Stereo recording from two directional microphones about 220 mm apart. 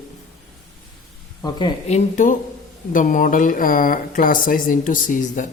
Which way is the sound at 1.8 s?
30° left (ahead or behind).